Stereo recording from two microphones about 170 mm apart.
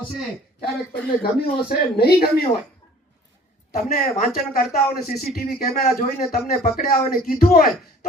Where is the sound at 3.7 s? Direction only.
60° left (ahead or behind).